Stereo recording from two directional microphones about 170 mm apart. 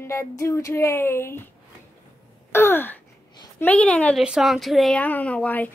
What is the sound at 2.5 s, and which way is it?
Gasp, 15° left (ahead or behind).